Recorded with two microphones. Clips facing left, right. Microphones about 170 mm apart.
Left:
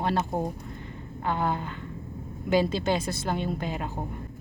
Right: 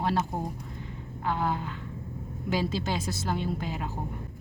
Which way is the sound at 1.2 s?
5° right (ahead or behind).